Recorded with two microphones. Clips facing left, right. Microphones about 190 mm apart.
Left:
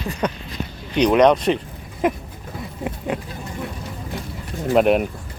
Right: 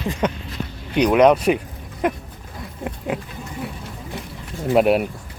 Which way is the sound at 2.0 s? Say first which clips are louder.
Left 1 dB; centre (ahead or behind).